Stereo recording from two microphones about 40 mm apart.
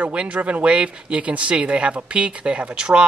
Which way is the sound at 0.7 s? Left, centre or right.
Right.